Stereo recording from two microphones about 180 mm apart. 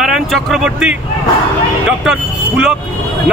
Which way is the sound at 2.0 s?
5° right (ahead or behind).